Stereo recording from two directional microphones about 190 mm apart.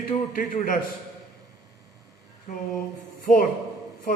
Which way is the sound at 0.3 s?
45° left (ahead or behind).